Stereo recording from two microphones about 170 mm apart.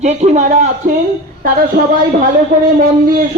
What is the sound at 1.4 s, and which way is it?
A woman's voice, 60° right (ahead or behind).